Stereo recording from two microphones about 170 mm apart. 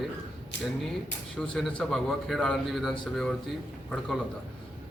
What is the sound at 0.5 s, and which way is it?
Speech, 90° left.